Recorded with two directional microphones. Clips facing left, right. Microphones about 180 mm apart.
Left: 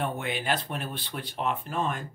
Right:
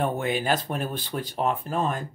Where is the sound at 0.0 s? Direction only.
45° right (ahead or behind).